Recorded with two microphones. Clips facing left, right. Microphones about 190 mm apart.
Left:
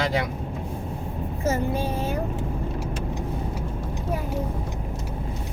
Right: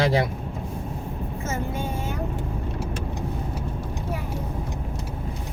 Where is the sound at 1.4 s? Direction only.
35° left (ahead or behind).